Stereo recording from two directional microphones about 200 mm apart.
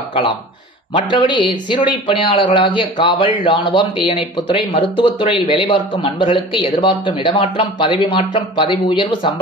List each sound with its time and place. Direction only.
0.9 s speech: 25° left (ahead or behind)